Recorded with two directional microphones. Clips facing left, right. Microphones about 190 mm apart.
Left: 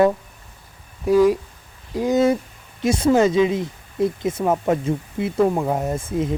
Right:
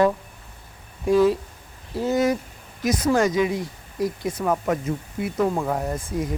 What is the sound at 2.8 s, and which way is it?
Speech, 25° left (ahead or behind).